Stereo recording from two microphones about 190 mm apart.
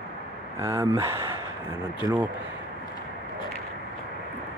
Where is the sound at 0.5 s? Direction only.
15° right (ahead or behind).